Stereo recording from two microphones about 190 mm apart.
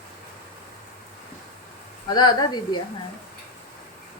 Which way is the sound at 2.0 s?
20° left (ahead or behind).